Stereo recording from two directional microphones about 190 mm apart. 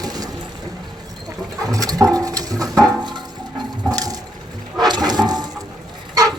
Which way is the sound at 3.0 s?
25° right (ahead or behind).